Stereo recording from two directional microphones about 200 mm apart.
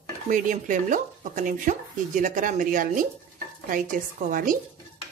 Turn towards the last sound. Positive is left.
turn(degrees=-45)  # may be behind; listen again after turning